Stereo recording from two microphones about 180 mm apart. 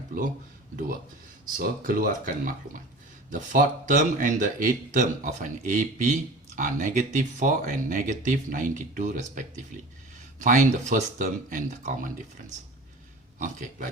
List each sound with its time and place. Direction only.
1.5 s speech: 50° right (ahead or behind)
10.4 s speech: 45° right (ahead or behind)
13.4 s speech: 45° right (ahead or behind)